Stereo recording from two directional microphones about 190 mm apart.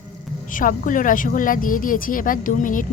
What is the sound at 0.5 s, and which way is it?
A woman's voice, 45° left (ahead or behind).